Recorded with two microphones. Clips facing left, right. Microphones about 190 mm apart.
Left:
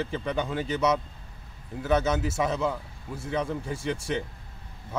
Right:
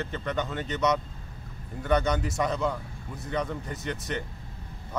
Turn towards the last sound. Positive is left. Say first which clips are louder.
# left 3 dB
turn(degrees=10)  # may be behind; listen again after turning